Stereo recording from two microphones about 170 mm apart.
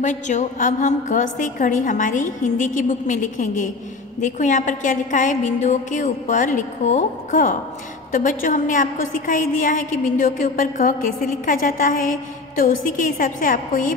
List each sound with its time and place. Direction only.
0.0 s a woman's voice: 45° left (ahead or behind)